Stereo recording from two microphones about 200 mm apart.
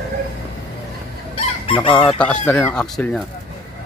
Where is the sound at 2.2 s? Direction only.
10° left (ahead or behind).